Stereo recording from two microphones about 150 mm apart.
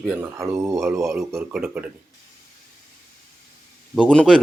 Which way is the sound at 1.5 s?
5° right (ahead or behind).